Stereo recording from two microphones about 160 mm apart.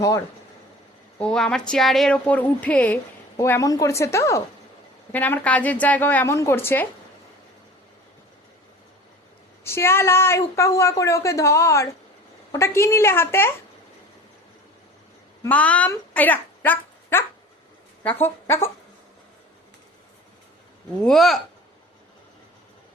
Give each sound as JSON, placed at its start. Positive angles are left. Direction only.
{"t": 1.2, "sound": "a woman's voice", "side_deg": 5}
{"t": 9.6, "sound": "a woman's voice", "side_deg": 15}
{"t": 15.4, "sound": "a woman's voice", "side_deg": 10}
{"t": 21.0, "sound": "a woman's voice", "side_deg": 0}